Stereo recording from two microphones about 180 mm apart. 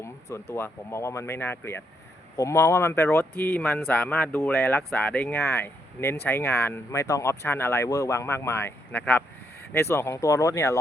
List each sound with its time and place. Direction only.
0.0 s speech: 15° left (ahead or behind)